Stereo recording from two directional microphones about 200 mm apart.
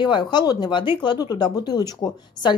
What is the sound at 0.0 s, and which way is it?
A woman's voice, 20° left (ahead or behind).